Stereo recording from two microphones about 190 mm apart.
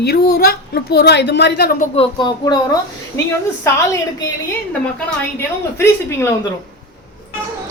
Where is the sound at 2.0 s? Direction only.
25° left (ahead or behind).